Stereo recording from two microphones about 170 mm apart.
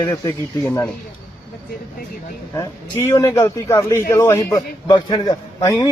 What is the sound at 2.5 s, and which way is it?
A man's voice, 20° left (ahead or behind).